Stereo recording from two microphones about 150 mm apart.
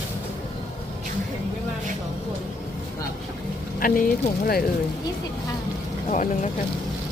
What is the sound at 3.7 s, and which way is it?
Speech, 65° left (ahead or behind).